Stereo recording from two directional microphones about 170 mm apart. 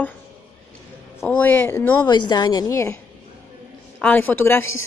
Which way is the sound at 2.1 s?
25° left (ahead or behind).